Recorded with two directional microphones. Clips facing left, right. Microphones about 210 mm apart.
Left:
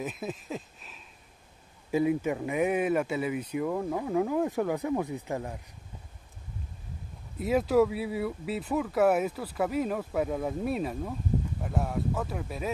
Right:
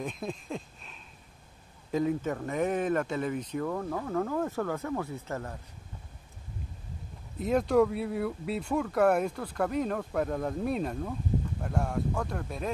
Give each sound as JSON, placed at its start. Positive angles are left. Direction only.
{"t": 0.0, "sound": "speech", "side_deg": 5}
{"t": 7.3, "sound": "speech", "side_deg": 5}